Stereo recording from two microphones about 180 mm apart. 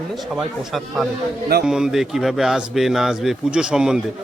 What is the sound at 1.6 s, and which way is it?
A man's voice, 5° right (ahead or behind).